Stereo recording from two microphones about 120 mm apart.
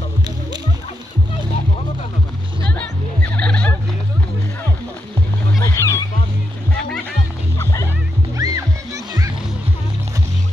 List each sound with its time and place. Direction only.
3.3 s a sound: 10° left (ahead or behind)
5.6 s music: 25° left (ahead or behind)
7.5 s music: 25° left (ahead or behind)
8.4 s music: 30° right (ahead or behind)